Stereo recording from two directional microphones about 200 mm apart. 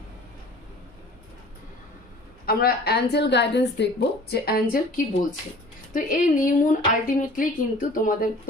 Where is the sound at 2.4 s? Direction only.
50° left (ahead or behind).